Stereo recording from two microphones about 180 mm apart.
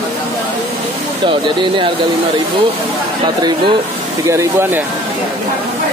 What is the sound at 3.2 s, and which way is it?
Speech, 25° right (ahead or behind).